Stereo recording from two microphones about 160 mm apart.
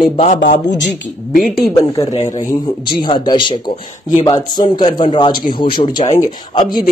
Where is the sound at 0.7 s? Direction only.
90° left.